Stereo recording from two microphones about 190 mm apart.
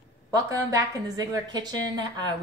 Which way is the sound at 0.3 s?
20° right (ahead or behind).